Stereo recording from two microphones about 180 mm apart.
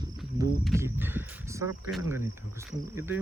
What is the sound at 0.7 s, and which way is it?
Speech, 15° right (ahead or behind).